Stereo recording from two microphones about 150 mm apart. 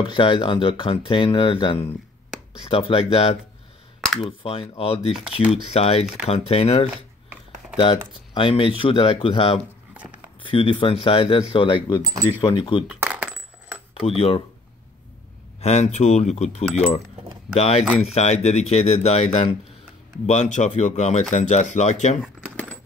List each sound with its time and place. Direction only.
0.0 s speech: 35° left (ahead or behind)
12.0 s speech: 25° right (ahead or behind)
12.4 s speech: 30° left (ahead or behind)
12.8 s coin: 10° right (ahead or behind)
14.0 s speech: 40° left (ahead or behind)
15.6 s speech: 45° left (ahead or behind)